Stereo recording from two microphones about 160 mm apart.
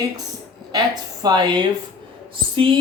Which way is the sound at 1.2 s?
25° right (ahead or behind).